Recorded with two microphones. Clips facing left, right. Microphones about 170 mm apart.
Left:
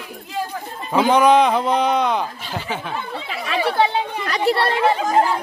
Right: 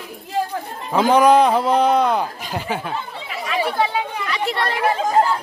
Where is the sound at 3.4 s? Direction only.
30° left (ahead or behind).